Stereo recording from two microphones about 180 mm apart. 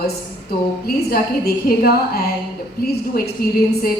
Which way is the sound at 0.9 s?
60° left (ahead or behind).